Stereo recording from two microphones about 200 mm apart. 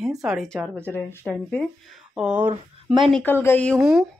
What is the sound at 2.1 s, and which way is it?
Speech, 5° right (ahead or behind).